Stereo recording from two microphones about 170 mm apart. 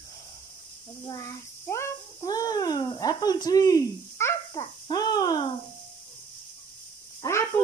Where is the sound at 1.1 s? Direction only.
20° left (ahead or behind).